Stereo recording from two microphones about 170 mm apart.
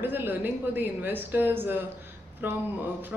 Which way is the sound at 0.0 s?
10° right (ahead or behind).